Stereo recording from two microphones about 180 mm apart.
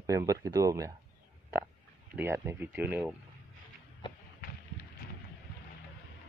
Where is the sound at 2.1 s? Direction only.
10° right (ahead or behind).